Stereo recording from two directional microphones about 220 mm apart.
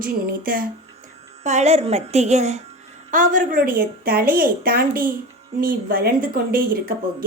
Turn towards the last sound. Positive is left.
turn(degrees=-40)  # may be behind; listen again after turning